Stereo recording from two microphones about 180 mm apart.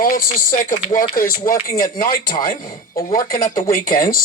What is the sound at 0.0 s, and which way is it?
Speech, 50° left (ahead or behind).